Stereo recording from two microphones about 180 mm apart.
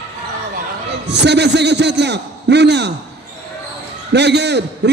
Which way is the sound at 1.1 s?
70° right (ahead or behind).